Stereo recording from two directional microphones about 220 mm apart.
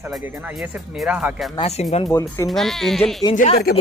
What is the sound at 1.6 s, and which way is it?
Speech, 30° left (ahead or behind).